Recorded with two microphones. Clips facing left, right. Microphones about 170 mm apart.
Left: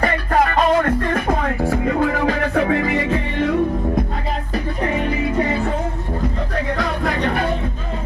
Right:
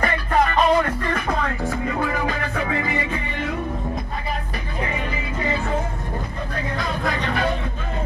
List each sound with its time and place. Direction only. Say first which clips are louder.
0.0 s music: left 3 dB; 45° left (ahead or behind)
1.9 s music: left 6 dB; 60° left (ahead or behind)
5.1 s music: left 6 dB; 60° left (ahead or behind)